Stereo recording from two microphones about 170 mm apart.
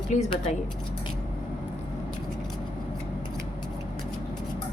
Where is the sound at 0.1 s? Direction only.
45° left (ahead or behind).